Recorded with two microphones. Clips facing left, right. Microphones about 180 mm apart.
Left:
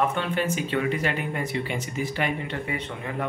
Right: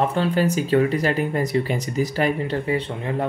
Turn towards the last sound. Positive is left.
turn(degrees=-30)  # may be behind; listen again after turning